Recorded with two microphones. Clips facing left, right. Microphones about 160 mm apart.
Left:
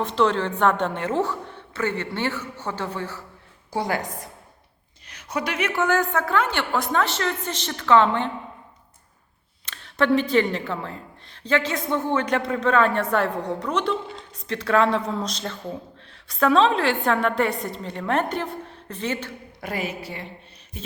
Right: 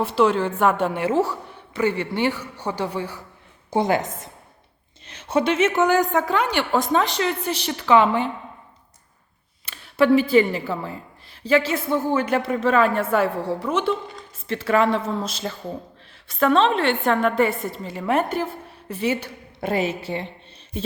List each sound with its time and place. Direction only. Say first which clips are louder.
0.0 s a woman's voice: right 2 dB; 10° right (ahead or behind)
9.6 s a woman's voice: right 4 dB; 5° right (ahead or behind)
19.5 s a woman's voice: right 6 dB; 25° right (ahead or behind)